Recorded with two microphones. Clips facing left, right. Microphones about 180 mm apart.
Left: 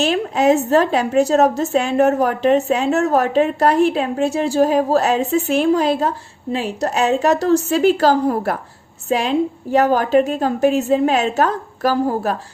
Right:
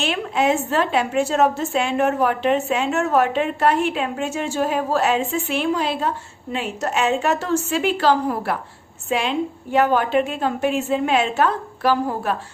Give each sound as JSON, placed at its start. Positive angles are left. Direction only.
{"t": 0.0, "sound": "a woman's voice", "side_deg": 40}